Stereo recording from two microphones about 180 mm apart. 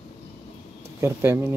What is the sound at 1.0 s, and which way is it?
Speech, 15° right (ahead or behind).